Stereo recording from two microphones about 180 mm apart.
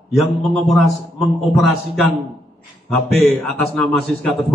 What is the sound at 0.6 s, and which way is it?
A man's voice, centre (ahead or behind).